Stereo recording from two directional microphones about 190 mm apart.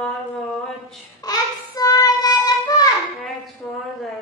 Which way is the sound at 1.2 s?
20° left (ahead or behind).